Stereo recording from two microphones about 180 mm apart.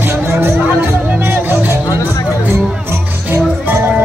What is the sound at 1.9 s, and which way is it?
Music, 15° left (ahead or behind).